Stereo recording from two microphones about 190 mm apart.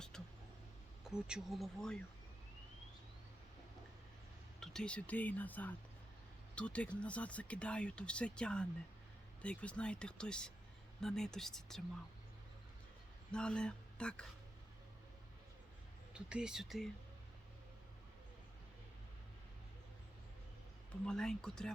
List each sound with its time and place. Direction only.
0.1 s a sound: 5° left (ahead or behind)
1.0 s speech: 5° right (ahead or behind)
4.6 s speech: 5° left (ahead or behind)
13.3 s speech: 5° left (ahead or behind)
16.1 s speech: 5° right (ahead or behind)
21.1 s speech: 5° left (ahead or behind)